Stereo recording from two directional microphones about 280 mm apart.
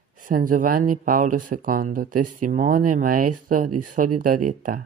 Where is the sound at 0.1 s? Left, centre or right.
Right.